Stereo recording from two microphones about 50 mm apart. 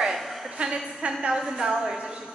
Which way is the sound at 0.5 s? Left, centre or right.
Centre.